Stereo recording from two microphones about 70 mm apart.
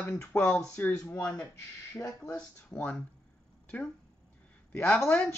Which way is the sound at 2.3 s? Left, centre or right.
Centre.